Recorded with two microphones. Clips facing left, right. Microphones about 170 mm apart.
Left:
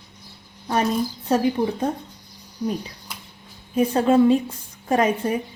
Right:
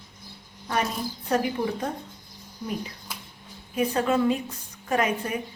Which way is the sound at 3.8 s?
30° left (ahead or behind).